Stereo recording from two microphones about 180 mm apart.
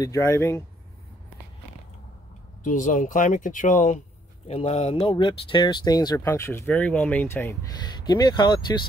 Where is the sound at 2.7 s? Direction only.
45° left (ahead or behind).